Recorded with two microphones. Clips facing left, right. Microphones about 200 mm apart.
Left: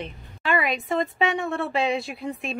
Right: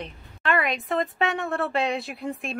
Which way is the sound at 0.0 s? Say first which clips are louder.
Even; centre (ahead or behind).